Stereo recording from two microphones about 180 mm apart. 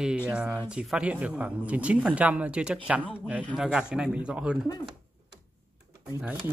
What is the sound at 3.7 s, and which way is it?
Speech, 5° right (ahead or behind).